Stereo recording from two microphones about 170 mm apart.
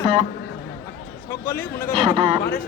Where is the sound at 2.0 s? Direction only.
30° right (ahead or behind).